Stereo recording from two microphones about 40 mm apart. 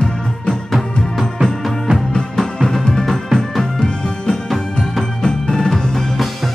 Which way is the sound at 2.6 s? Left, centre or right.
Centre.